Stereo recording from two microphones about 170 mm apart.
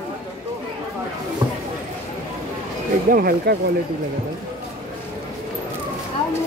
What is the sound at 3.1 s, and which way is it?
Speech, 60° right (ahead or behind).